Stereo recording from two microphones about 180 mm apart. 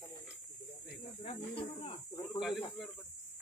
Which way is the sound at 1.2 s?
30° left (ahead or behind).